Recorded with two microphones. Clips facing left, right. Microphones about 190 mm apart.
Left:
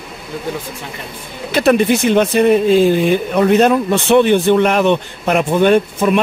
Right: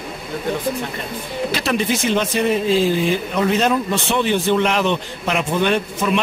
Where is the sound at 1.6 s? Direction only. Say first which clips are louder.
Left 11 dB; 55° left (ahead or behind).